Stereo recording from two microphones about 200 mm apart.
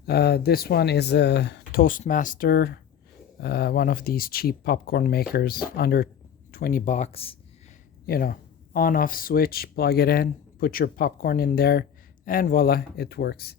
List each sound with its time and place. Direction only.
0.0 s speech: 55° left (ahead or behind); by 7.3 s 30° left (ahead or behind)
8.0 s speech: 50° left (ahead or behind)